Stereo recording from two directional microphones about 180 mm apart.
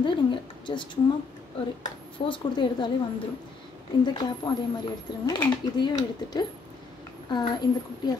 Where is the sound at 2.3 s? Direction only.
25° left (ahead or behind).